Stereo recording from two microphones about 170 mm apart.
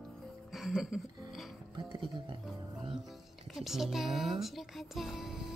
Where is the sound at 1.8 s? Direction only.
30° right (ahead or behind).